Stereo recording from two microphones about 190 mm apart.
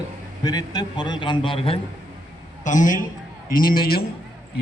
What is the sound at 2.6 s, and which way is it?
A man's voice, 40° left (ahead or behind).